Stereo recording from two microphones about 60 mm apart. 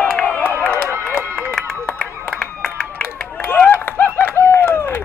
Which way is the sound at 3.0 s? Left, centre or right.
Left.